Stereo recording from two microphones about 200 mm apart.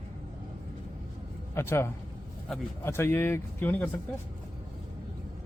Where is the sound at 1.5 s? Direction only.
10° left (ahead or behind).